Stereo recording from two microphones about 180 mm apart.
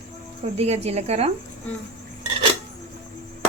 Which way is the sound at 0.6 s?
35° right (ahead or behind).